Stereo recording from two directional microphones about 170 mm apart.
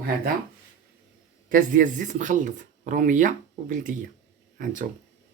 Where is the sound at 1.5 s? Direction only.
50° right (ahead or behind).